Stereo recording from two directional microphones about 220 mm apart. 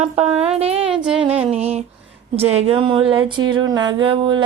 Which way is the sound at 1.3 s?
30° right (ahead or behind).